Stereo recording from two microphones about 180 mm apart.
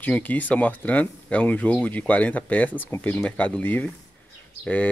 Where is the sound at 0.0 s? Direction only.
10° left (ahead or behind).